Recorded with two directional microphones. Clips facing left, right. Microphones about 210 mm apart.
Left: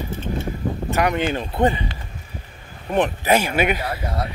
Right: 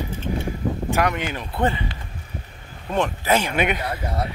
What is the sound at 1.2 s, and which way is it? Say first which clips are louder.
Speech: left 5 dB; 25° left (ahead or behind).